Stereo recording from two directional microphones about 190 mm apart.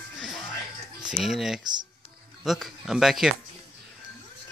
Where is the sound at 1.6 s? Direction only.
25° right (ahead or behind).